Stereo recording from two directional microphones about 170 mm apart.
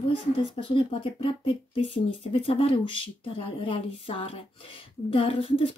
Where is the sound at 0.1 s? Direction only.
30° left (ahead or behind).